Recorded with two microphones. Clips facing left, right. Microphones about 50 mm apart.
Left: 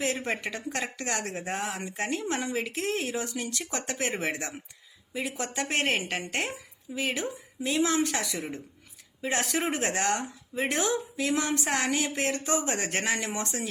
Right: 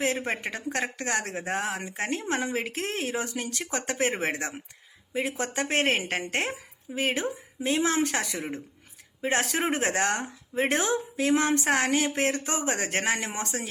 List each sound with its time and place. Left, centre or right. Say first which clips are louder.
0.0 s speech: right 2 dB; right
9.2 s speech: right 2 dB; right